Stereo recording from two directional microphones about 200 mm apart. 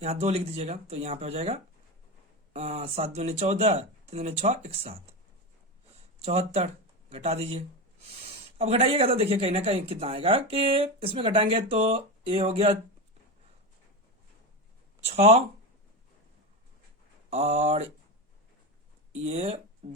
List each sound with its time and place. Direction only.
0.0 s speech: 30° right (ahead or behind)
6.1 s speech: 30° right (ahead or behind)
15.0 s speech: 30° right (ahead or behind)
17.2 s speech: 30° right (ahead or behind)
19.2 s speech: 30° right (ahead or behind)